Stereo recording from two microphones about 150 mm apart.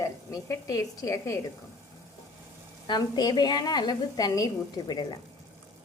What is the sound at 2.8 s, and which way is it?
A woman's voice, 30° left (ahead or behind).